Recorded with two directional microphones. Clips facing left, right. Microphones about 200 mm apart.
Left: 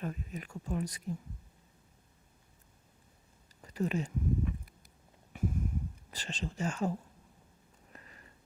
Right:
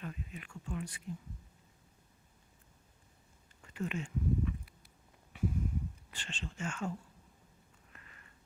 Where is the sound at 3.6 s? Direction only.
35° left (ahead or behind).